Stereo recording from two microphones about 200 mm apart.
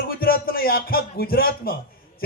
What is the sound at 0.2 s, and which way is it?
A man's voice, 45° left (ahead or behind).